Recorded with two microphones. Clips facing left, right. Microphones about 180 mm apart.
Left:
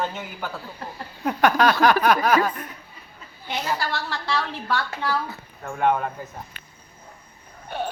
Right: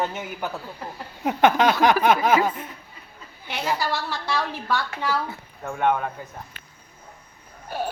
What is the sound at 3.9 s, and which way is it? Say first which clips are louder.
Speech: even; 15° right (ahead or behind).